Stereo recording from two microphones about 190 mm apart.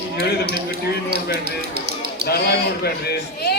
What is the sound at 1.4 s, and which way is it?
Speech, 55° right (ahead or behind).